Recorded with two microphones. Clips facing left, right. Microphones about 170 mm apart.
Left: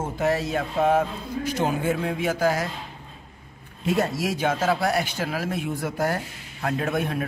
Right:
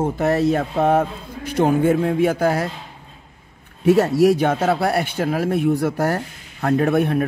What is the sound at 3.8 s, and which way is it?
Speech, 70° right (ahead or behind).